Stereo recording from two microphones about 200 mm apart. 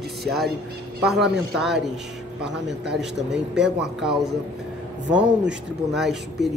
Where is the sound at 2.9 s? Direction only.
5° right (ahead or behind).